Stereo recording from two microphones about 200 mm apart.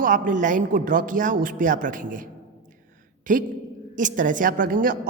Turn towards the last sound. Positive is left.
turn(degrees=-45)  # may be behind; listen again after turning